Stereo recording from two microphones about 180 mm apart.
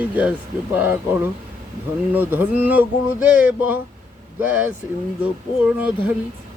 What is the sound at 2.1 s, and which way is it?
Speech, 10° right (ahead or behind).